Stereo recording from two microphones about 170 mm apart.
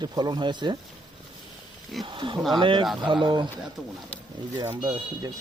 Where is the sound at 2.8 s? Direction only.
Centre (ahead or behind).